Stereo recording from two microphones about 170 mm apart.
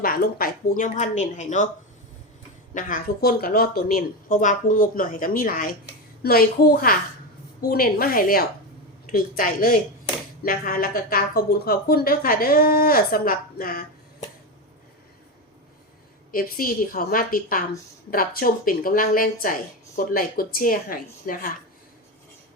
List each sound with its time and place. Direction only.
0.0 s a woman's voice: 60° left (ahead or behind)
2.7 s a woman's voice: 55° left (ahead or behind)
16.3 s a woman's voice: 55° left (ahead or behind)